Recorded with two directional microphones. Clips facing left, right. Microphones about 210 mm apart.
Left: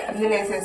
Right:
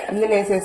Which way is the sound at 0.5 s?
50° right (ahead or behind).